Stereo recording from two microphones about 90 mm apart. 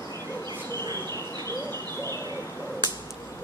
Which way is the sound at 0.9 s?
30° left (ahead or behind).